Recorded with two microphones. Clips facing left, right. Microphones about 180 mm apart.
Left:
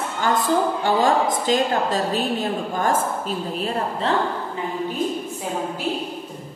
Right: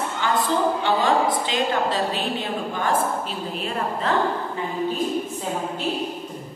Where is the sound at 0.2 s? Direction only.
45° left (ahead or behind).